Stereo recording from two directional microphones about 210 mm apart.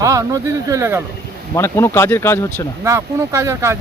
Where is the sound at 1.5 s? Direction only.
15° left (ahead or behind).